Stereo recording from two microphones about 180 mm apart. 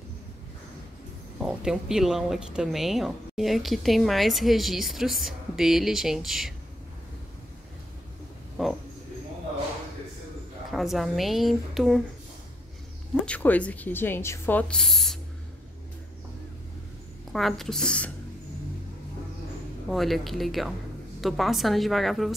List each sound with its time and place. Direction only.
1.4 s speech: 5° right (ahead or behind)
10.7 s speech: centre (ahead or behind)
13.2 s speech: 10° left (ahead or behind)
17.3 s speech: centre (ahead or behind)
19.9 s speech: centre (ahead or behind)